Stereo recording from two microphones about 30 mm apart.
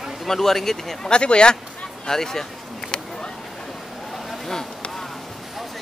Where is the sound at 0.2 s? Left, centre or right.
Centre.